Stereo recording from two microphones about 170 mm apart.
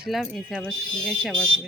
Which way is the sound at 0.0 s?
Centre (ahead or behind).